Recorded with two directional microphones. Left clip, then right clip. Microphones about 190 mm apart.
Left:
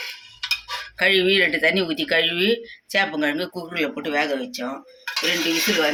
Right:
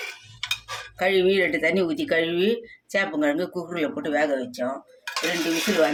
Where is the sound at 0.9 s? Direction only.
20° right (ahead or behind).